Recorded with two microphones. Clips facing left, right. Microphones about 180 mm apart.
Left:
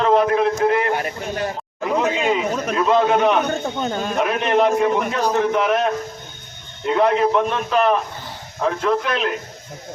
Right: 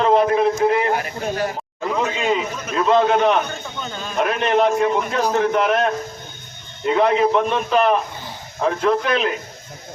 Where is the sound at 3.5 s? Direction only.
45° left (ahead or behind).